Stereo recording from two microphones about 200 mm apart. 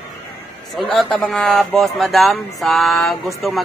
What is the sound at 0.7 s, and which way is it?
Speech, centre (ahead or behind).